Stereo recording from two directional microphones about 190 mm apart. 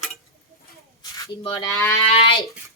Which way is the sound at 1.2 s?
20° left (ahead or behind).